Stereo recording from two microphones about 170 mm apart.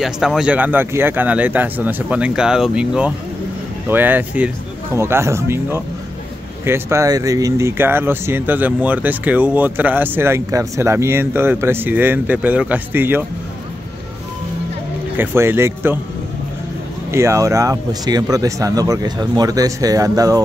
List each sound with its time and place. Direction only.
0.0 s speech: 5° right (ahead or behind)
15.1 s speech: 15° right (ahead or behind)
17.1 s speech: 15° right (ahead or behind)